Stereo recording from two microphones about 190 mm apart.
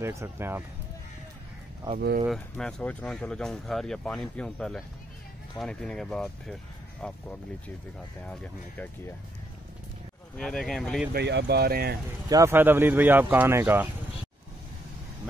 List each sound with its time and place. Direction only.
0.0 s speech: 15° right (ahead or behind)
2.2 s speech: 5° left (ahead or behind)
10.3 s speech: 5° left (ahead or behind)
11.1 s speech: 60° right (ahead or behind)
12.3 s speech: 15° right (ahead or behind)